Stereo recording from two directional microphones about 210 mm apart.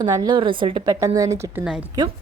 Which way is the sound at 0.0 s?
20° right (ahead or behind).